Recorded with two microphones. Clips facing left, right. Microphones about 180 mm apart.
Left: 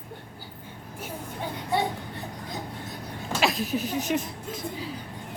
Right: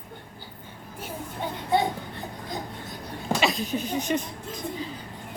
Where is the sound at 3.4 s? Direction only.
Centre (ahead or behind).